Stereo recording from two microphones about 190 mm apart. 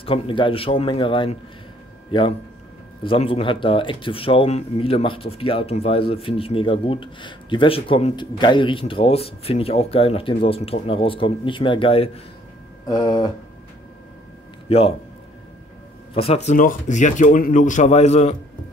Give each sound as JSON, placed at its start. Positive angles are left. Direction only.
{"t": 0.0, "sound": "speech", "side_deg": 30}
{"t": 14.7, "sound": "a man's voice", "side_deg": 30}
{"t": 16.2, "sound": "a man's voice", "side_deg": 35}